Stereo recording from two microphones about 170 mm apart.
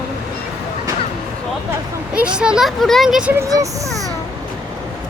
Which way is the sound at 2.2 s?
5° right (ahead or behind).